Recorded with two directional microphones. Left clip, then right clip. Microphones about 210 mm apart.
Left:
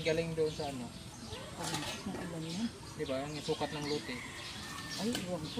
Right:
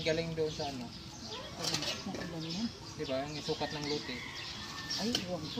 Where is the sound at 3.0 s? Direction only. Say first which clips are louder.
Right 1 dB; 5° right (ahead or behind).